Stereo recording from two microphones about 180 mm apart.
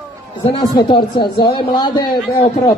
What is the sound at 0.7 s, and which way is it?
A man's voice, 25° left (ahead or behind).